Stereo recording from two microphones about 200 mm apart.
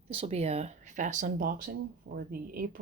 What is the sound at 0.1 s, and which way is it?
Speech, 30° right (ahead or behind).